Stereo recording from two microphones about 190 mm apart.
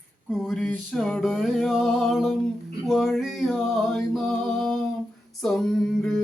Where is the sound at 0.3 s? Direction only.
Centre (ahead or behind).